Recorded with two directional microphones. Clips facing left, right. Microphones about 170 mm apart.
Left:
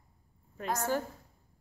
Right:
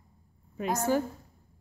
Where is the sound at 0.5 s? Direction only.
15° right (ahead or behind).